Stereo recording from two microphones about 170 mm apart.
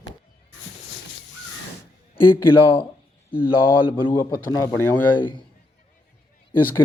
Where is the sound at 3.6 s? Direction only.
30° left (ahead or behind).